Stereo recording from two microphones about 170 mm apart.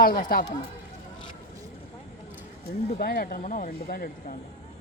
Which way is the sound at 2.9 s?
60° left (ahead or behind).